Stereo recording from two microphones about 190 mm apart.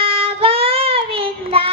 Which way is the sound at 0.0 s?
30° right (ahead or behind).